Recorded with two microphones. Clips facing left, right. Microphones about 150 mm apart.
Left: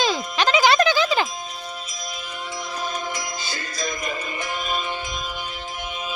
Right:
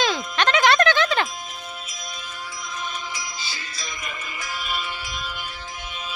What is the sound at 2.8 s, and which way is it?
Music, 45° left (ahead or behind).